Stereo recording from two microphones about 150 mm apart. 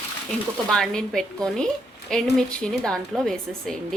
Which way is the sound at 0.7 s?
5° left (ahead or behind).